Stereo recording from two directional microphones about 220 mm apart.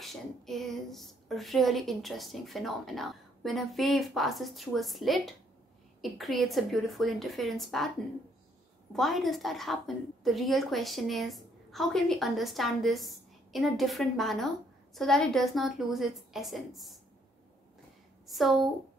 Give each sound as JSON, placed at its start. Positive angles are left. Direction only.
{"t": 0.0, "sound": "a woman's voice", "side_deg": 0}
{"t": 8.9, "sound": "a woman's voice", "side_deg": 0}
{"t": 18.2, "sound": "a woman's voice", "side_deg": 0}